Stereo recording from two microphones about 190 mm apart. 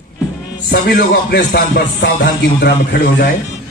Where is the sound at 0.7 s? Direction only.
50° left (ahead or behind).